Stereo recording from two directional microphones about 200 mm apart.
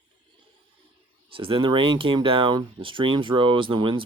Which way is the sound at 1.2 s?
25° right (ahead or behind).